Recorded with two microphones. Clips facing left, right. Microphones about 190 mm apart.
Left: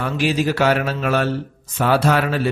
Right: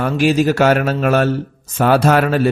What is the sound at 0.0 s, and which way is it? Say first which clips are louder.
Speech: right 5 dB; 45° right (ahead or behind).